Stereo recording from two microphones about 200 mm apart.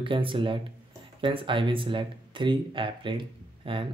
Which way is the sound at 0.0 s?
25° right (ahead or behind).